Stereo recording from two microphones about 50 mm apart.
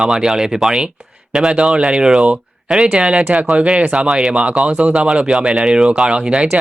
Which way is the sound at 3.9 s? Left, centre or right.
Centre.